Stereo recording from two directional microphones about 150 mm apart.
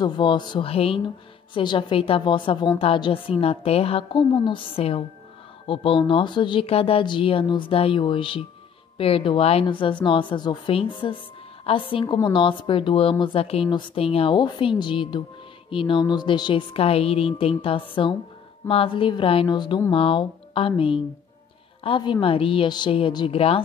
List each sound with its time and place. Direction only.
0.0 s a woman's voice: 30° left (ahead or behind)